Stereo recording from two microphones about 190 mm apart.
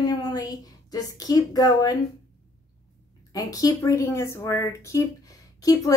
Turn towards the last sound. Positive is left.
turn(degrees=20)  # may be behind; listen again after turning